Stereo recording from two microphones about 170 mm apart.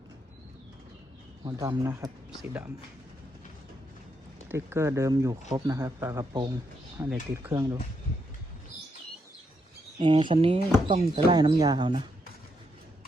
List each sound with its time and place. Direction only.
1.5 s speech: 20° right (ahead or behind)
4.4 s speech: 15° right (ahead or behind)
10.0 s speech: 30° right (ahead or behind)